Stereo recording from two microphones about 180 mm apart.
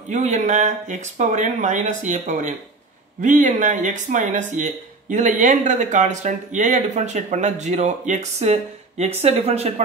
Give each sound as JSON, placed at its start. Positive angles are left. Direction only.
{"t": 0.1, "sound": "speech", "side_deg": -40}